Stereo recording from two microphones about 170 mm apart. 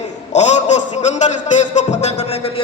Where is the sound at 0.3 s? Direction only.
45° left (ahead or behind).